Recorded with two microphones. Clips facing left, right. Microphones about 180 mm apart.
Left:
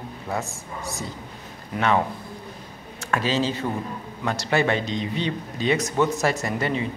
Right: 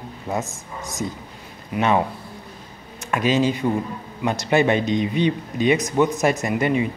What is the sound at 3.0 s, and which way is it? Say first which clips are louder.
Speech: right 4 dB; 15° right (ahead or behind).